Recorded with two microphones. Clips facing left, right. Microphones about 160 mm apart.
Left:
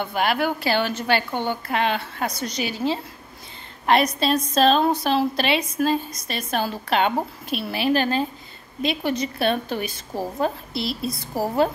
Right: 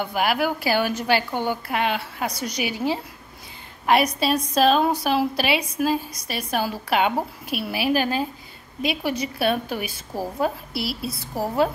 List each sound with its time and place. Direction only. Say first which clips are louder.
0.0 s a woman's voice: even; 10° right (ahead or behind)